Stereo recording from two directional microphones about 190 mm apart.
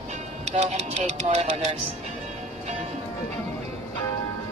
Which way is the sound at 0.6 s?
35° right (ahead or behind).